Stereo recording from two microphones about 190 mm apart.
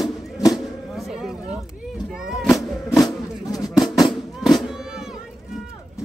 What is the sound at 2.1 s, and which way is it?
Music, centre (ahead or behind).